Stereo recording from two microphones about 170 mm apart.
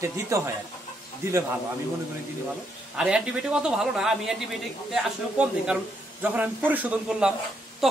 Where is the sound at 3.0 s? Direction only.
5° right (ahead or behind).